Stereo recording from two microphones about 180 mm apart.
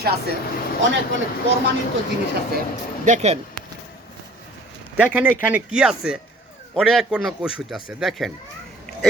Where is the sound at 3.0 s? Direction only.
40° right (ahead or behind).